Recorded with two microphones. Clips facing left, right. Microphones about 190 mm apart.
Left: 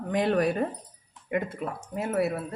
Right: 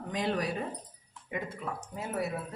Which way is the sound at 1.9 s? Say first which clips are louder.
Left 8 dB; 65° left (ahead or behind).